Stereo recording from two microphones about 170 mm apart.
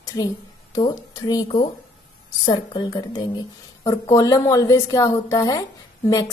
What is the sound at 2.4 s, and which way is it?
Speech, 25° left (ahead or behind).